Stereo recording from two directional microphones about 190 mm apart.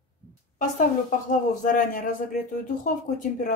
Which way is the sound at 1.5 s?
45° left (ahead or behind).